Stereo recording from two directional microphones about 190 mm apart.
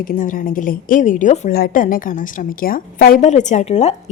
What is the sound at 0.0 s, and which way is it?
A woman's voice, 45° left (ahead or behind).